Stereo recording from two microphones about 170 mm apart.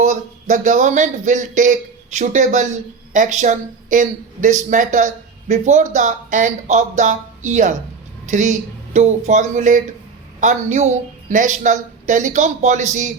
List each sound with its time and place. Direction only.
0.0 s speech: 45° right (ahead or behind)